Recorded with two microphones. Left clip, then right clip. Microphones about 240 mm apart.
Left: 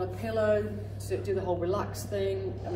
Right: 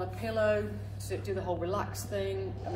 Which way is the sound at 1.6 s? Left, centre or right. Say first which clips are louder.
Left 3 dB; centre.